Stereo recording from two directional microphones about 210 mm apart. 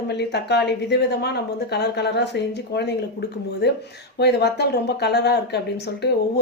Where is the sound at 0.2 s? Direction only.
50° left (ahead or behind).